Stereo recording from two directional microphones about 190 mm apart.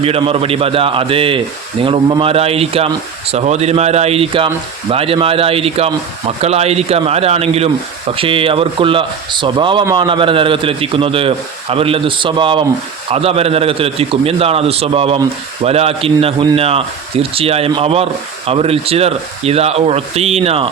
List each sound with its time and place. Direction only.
0.0 s a man's voice: 30° right (ahead or behind)